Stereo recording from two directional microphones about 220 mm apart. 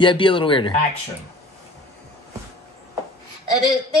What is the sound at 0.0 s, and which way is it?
Speech, 20° left (ahead or behind).